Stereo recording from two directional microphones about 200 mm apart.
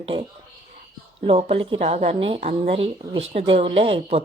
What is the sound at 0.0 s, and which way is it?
A woman's voice, 25° right (ahead or behind).